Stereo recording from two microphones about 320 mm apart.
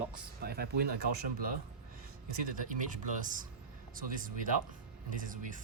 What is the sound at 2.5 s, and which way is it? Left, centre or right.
Speech, right.